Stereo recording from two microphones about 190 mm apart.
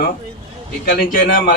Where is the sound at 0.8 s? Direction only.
45° left (ahead or behind).